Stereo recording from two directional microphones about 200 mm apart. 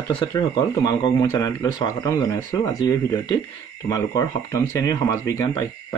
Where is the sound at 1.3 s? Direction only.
15° left (ahead or behind).